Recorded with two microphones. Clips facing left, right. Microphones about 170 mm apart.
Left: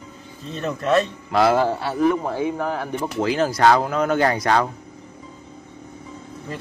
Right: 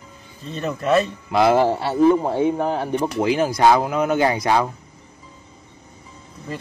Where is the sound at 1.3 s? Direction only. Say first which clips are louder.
Right 2 dB; 20° right (ahead or behind).